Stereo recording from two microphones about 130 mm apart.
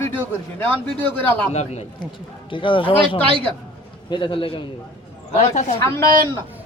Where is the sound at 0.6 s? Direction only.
15° left (ahead or behind).